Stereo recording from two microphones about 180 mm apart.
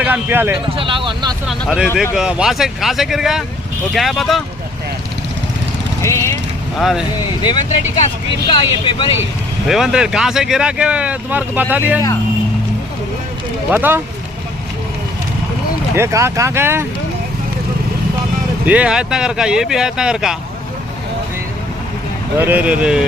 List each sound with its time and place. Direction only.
0.0 s speech: 10° right (ahead or behind)
0.8 s vehicle: 30° right (ahead or behind)
1.5 s speech: 5° right (ahead or behind)
6.0 s speech: 15° left (ahead or behind)
6.7 s speech: centre (ahead or behind)
8.4 s speech: 30° left (ahead or behind)
9.6 s speech: 5° right (ahead or behind)
13.7 s speech: 10° right (ahead or behind)
16.0 s speech: 15° right (ahead or behind)
18.6 s speech: 5° right (ahead or behind)
22.4 s speech: 10° right (ahead or behind)